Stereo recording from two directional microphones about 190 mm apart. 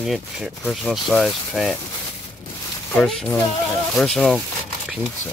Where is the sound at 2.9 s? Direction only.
Centre (ahead or behind).